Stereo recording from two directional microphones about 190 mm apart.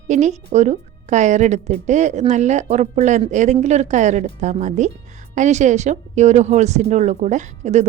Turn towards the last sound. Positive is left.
turn(degrees=-35)  # may be behind; listen again after turning